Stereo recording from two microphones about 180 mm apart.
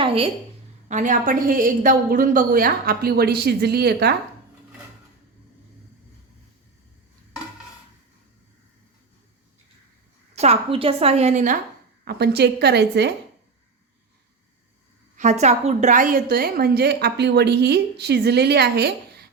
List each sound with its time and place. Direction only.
0.0 s a sound: 30° right (ahead or behind)
0.9 s a woman's voice: 45° right (ahead or behind); by 4.1 s 60° right (ahead or behind)
10.3 s a woman's voice: 35° right (ahead or behind)
12.0 s a woman's voice: 65° right (ahead or behind)
15.1 s a woman's voice: 40° right (ahead or behind); by 19.2 s 65° right (ahead or behind)